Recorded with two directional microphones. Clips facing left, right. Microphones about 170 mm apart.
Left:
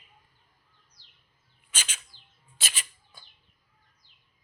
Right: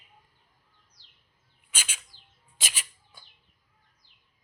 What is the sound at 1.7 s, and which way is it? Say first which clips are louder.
Bird: left 1 dB; 10° right (ahead or behind).